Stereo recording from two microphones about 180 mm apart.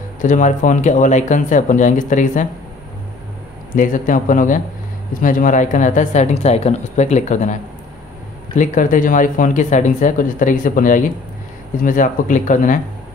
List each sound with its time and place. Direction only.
0.2 s speech: 45° left (ahead or behind)
3.7 s speech: 45° left (ahead or behind)
8.5 s speech: 45° left (ahead or behind)